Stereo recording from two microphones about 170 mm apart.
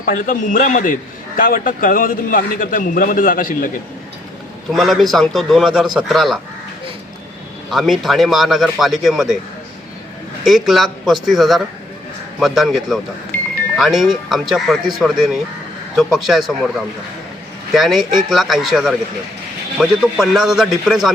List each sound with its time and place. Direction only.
0.0 s a man's voice: 50° left (ahead or behind)
4.7 s speech: centre (ahead or behind)
7.7 s speech: centre (ahead or behind)
10.4 s speech: centre (ahead or behind)
17.7 s speech: centre (ahead or behind)